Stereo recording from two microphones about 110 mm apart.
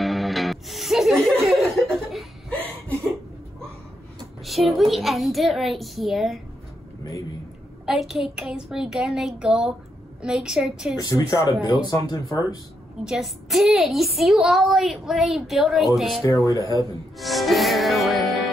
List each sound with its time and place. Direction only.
0.0 s music: centre (ahead or behind)
2.5 s chuckle: 10° left (ahead or behind)
4.5 s a woman's voice: centre (ahead or behind)
7.8 s a woman's voice: 5° right (ahead or behind)
11.0 s speech: 35° left (ahead or behind)
13.0 s a woman's voice: 5° right (ahead or behind)
16.3 s speech: 30° left (ahead or behind)
17.2 s music: centre (ahead or behind)